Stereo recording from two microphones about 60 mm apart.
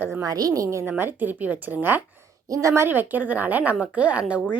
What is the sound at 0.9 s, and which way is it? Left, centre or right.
A woman's voice, right.